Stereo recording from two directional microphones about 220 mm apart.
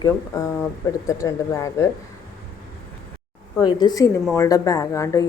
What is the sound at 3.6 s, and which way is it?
Speech, 20° left (ahead or behind).